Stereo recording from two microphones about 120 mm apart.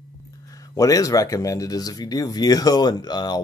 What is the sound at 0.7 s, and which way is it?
Speech, 30° left (ahead or behind).